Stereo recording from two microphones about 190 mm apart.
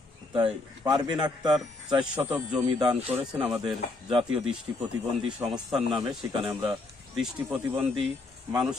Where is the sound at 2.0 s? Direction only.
5° right (ahead or behind).